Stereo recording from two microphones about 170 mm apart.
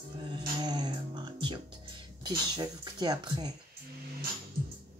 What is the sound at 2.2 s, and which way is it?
A woman's voice, 25° right (ahead or behind).